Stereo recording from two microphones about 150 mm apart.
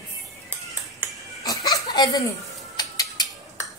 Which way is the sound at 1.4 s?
25° left (ahead or behind).